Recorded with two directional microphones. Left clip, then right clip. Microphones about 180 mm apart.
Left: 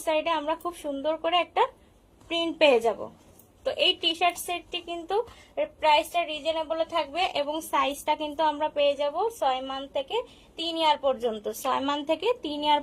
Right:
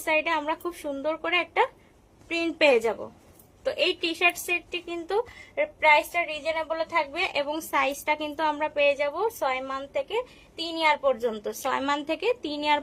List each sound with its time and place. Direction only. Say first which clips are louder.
0.0 s a woman's voice: right 1 dB; 25° right (ahead or behind)